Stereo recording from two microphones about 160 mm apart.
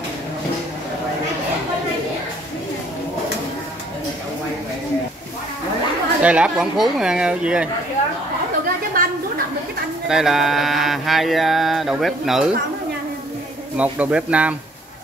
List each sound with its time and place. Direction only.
6.2 s mantra: 5° right (ahead or behind)
9.0 s a sound: 60° right (ahead or behind)
10.0 s mantra: 5° right (ahead or behind)
13.7 s speech: 10° right (ahead or behind)